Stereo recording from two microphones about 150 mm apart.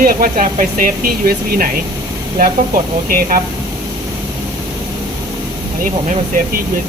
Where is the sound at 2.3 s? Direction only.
70° right (ahead or behind).